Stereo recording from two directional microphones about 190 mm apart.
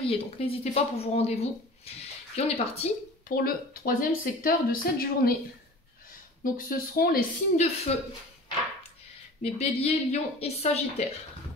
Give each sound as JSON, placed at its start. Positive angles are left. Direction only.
{"t": 0.0, "sound": "a woman's voice", "side_deg": 30}
{"t": 3.3, "sound": "speech", "side_deg": 50}
{"t": 6.4, "sound": "speech", "side_deg": 45}
{"t": 7.9, "sound": "a woman's voice", "side_deg": 35}
{"t": 9.4, "sound": "a woman's voice", "side_deg": 35}